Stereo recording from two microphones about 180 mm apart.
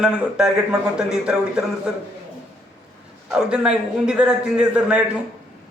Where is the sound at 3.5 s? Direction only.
5° right (ahead or behind).